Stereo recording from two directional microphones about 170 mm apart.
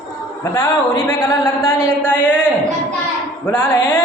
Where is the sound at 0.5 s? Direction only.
20° left (ahead or behind).